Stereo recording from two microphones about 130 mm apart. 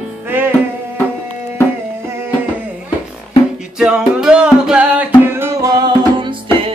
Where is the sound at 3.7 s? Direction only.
5° right (ahead or behind); by 6.4 s 35° right (ahead or behind).